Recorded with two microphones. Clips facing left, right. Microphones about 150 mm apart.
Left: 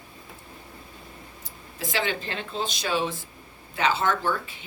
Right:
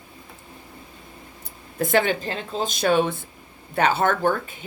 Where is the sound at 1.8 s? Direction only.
55° right (ahead or behind).